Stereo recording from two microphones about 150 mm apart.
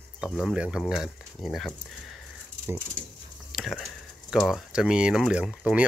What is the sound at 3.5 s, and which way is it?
Speech, centre (ahead or behind).